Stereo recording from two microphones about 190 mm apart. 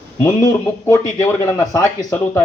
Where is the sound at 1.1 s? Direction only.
15° left (ahead or behind).